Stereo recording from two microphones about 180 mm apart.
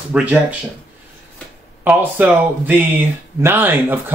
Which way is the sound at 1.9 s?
10° right (ahead or behind).